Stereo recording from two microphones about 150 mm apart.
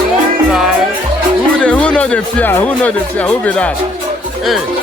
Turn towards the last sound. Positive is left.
turn(degrees=10)  # may be behind; listen again after turning